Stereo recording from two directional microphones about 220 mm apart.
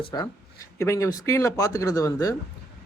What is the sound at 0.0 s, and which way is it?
Speech, 20° left (ahead or behind).